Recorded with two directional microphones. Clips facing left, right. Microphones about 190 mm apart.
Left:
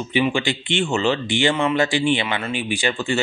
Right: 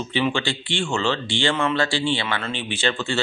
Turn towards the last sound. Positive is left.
turn(degrees=15)  # may be behind; listen again after turning